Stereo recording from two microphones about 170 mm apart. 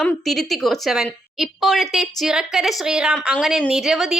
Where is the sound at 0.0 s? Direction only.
Centre (ahead or behind).